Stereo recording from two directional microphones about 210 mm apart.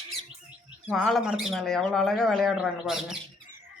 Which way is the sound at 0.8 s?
5° right (ahead or behind).